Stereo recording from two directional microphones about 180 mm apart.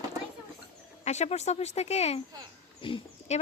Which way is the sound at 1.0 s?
40° left (ahead or behind).